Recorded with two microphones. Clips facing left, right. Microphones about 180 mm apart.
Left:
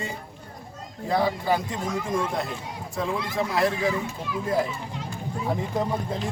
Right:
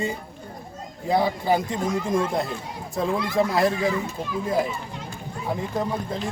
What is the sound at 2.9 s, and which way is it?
Speech, 35° right (ahead or behind).